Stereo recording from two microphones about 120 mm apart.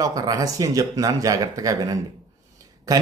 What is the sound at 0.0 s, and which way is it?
A man's voice, 30° right (ahead or behind).